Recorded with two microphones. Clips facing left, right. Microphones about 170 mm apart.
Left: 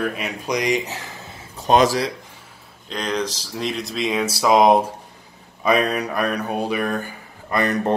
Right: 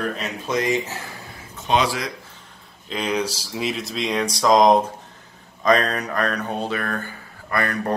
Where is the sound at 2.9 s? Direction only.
5° right (ahead or behind).